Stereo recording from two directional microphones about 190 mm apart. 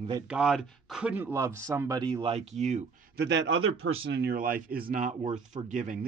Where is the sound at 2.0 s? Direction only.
30° right (ahead or behind).